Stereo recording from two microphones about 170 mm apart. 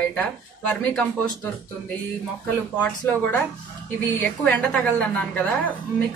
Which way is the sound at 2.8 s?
10° left (ahead or behind).